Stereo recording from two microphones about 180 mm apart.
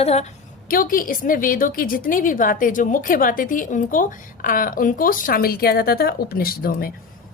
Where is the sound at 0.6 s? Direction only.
50° left (ahead or behind).